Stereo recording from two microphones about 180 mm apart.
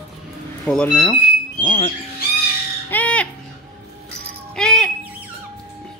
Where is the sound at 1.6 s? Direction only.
35° left (ahead or behind).